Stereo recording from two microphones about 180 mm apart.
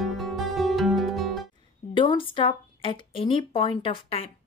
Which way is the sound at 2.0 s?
30° left (ahead or behind).